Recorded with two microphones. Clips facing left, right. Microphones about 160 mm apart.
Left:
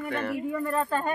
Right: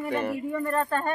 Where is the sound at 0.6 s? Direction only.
5° left (ahead or behind).